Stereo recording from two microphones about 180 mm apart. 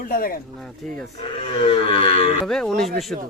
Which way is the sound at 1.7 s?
30° left (ahead or behind).